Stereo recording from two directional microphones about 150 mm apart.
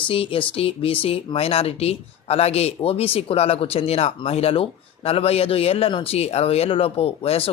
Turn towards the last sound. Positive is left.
turn(degrees=40)  # may be behind; listen again after turning